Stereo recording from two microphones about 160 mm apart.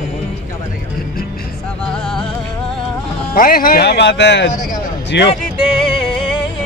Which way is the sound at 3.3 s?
65° left (ahead or behind).